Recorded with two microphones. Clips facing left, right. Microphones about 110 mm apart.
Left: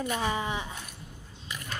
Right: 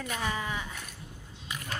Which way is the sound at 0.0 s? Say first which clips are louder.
Left 4 dB; 25° left (ahead or behind).